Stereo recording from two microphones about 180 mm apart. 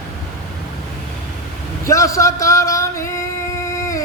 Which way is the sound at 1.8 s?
15° left (ahead or behind).